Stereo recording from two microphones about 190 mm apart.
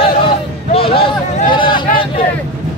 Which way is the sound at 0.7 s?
30° left (ahead or behind).